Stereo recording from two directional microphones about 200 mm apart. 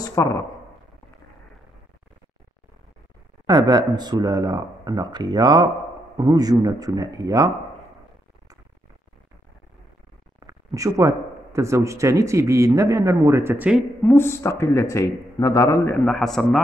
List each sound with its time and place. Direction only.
0.0 s a sound: 15° left (ahead or behind)
3.4 s speech: 20° right (ahead or behind)
10.4 s speech: 15° right (ahead or behind)
14.0 s speech: 10° left (ahead or behind)